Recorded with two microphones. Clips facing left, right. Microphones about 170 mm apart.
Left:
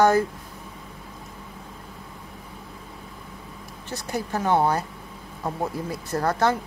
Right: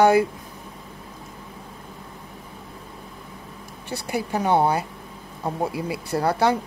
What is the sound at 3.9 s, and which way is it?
Speech, 10° right (ahead or behind).